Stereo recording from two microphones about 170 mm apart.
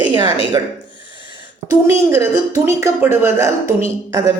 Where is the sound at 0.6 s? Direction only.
20° right (ahead or behind).